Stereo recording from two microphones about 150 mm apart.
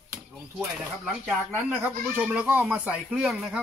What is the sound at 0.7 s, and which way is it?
Speech, 5° right (ahead or behind).